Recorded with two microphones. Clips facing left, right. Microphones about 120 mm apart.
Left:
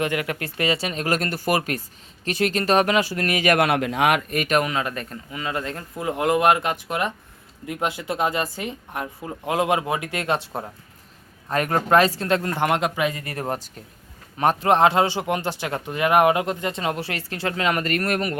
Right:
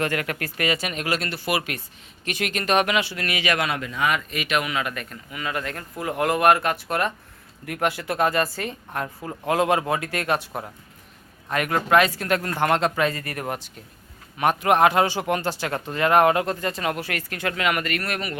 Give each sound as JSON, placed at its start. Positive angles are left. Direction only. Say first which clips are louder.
{"t": 0.0, "sound": "speech", "louder": "left 1 dB", "side_deg": 20}
{"t": 1.0, "sound": "speech", "louder": "left 5 dB", "side_deg": 45}
{"t": 4.2, "sound": "speech", "louder": "left 4 dB", "side_deg": 50}
{"t": 13.2, "sound": "speech", "louder": "left 2 dB", "side_deg": 25}